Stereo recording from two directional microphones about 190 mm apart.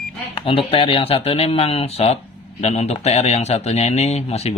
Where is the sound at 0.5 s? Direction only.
30° left (ahead or behind).